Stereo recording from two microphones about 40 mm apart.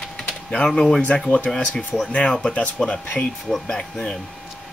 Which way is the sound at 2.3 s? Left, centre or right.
Left.